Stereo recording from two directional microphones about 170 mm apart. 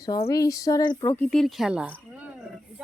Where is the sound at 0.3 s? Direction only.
20° left (ahead or behind).